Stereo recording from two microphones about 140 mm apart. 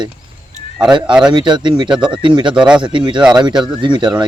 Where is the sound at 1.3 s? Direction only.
30° right (ahead or behind).